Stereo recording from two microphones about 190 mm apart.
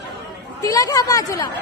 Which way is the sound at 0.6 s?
20° left (ahead or behind).